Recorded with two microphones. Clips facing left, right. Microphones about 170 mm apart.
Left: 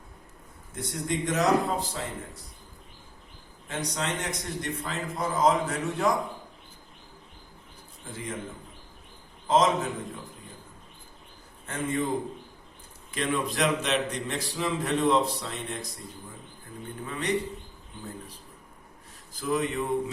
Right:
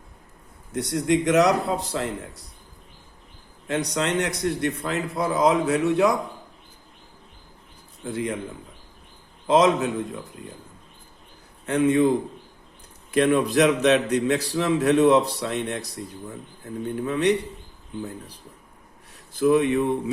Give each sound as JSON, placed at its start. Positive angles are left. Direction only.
{"t": 0.7, "sound": "a man's voice", "side_deg": -70}
{"t": 3.7, "sound": "a man's voice", "side_deg": -70}
{"t": 8.0, "sound": "a man's voice", "side_deg": -70}
{"t": 9.5, "sound": "a man's voice", "side_deg": -70}
{"t": 11.6, "sound": "a man's voice", "side_deg": -70}
{"t": 13.1, "sound": "a man's voice", "side_deg": -60}
{"t": 16.9, "sound": "a man's voice", "side_deg": -70}
{"t": 19.3, "sound": "a man's voice", "side_deg": -65}